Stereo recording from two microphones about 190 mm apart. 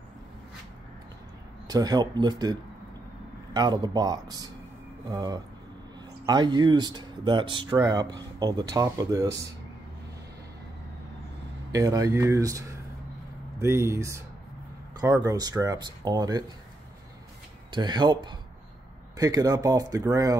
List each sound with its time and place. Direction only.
1.7 s speech: 20° right (ahead or behind)
3.5 s speech: 20° right (ahead or behind)
11.7 s speech: 20° right (ahead or behind)
15.2 s speech: 20° right (ahead or behind)
17.6 s speech: 25° right (ahead or behind)